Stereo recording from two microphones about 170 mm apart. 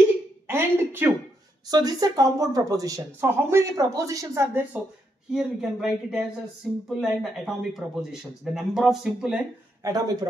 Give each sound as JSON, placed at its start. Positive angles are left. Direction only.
{"t": 0.5, "sound": "a sound", "side_deg": -15}
{"t": 1.7, "sound": "speech", "side_deg": -20}
{"t": 5.3, "sound": "speech", "side_deg": -5}
{"t": 9.8, "sound": "speech", "side_deg": -20}